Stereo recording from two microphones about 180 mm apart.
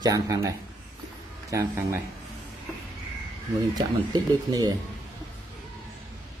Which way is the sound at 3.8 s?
20° right (ahead or behind).